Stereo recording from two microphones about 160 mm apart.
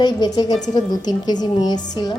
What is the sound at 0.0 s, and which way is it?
A woman's voice, 25° left (ahead or behind).